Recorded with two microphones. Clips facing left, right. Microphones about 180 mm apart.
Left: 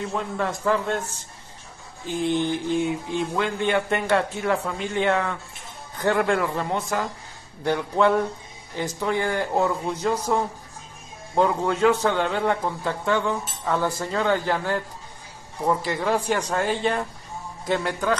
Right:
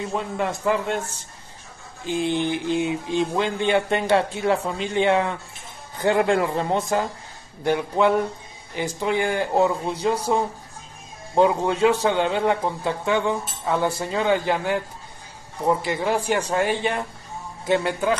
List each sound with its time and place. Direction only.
0.1 s speech: 15° right (ahead or behind)
2.0 s speech: 20° right (ahead or behind)
7.6 s speech: 10° right (ahead or behind)
11.3 s speech: 15° right (ahead or behind)